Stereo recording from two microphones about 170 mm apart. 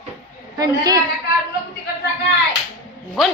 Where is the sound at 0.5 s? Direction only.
20° right (ahead or behind).